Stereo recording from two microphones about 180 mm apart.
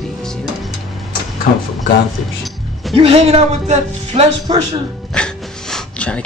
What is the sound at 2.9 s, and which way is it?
Speech, 35° right (ahead or behind).